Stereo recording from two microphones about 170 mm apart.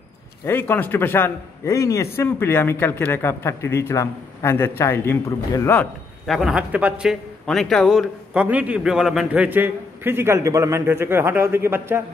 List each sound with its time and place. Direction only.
0.5 s a man's voice: 10° left (ahead or behind)
6.2 s a man's voice: centre (ahead or behind)